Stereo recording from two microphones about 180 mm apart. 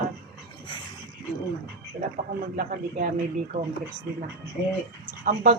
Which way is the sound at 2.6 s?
50° right (ahead or behind).